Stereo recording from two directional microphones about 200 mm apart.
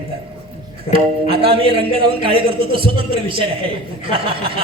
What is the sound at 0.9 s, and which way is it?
A man's voice, 25° right (ahead or behind).